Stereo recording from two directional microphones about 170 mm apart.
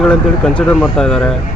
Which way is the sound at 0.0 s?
5° left (ahead or behind).